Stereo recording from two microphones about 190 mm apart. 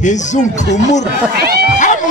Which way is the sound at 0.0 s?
40° left (ahead or behind).